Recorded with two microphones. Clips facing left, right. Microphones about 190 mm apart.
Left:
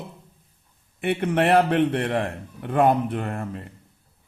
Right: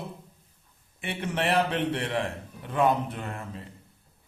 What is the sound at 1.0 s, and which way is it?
A man's voice, 55° left (ahead or behind).